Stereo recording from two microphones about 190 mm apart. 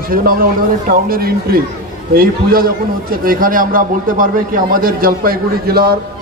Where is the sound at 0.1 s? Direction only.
50° right (ahead or behind).